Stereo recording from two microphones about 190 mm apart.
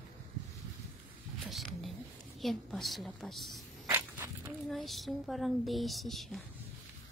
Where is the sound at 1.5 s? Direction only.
Centre (ahead or behind).